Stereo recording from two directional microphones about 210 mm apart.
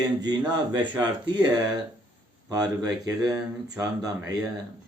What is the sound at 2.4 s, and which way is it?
Speech, 15° right (ahead or behind).